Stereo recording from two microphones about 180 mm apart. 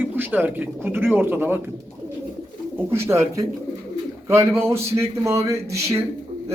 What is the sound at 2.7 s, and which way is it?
Speech, 15° right (ahead or behind).